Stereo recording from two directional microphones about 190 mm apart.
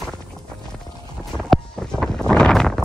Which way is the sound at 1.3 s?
Centre (ahead or behind).